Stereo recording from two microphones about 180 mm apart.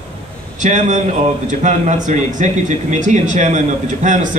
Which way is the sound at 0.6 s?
40° right (ahead or behind).